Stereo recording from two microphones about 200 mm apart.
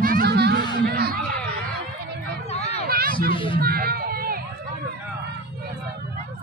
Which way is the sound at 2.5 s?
30° left (ahead or behind).